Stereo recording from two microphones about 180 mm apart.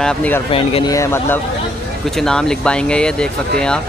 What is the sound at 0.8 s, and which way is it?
Speech, 15° left (ahead or behind).